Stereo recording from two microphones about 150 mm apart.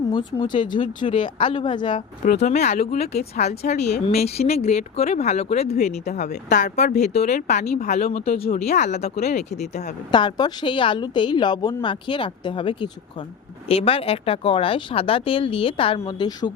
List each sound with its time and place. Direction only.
0.1 s a woman's voice: 30° left (ahead or behind)
2.4 s speech: 50° left (ahead or behind)
10.1 s a woman's voice: 30° left (ahead or behind)